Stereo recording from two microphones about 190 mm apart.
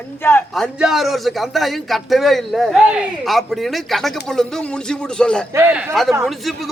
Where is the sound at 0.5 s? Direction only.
Centre (ahead or behind).